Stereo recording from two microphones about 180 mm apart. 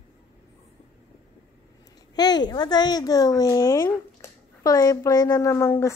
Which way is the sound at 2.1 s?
20° left (ahead or behind).